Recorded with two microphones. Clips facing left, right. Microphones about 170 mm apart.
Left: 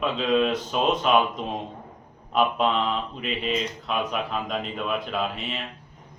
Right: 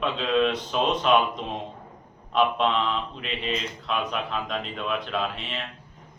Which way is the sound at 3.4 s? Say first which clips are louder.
Left 2 dB; 5° left (ahead or behind).